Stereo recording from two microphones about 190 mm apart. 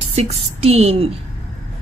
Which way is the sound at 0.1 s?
35° right (ahead or behind).